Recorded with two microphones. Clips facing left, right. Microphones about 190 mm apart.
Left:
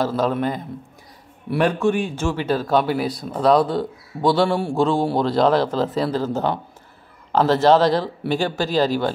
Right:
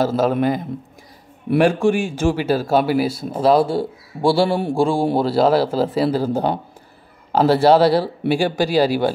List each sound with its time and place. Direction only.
0.0 s speech: 5° right (ahead or behind)
1.5 s speech: 25° right (ahead or behind)
2.1 s speech: 10° right (ahead or behind)